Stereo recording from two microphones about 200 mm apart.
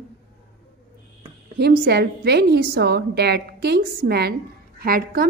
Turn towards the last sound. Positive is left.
turn(degrees=-45)  # may be behind; listen again after turning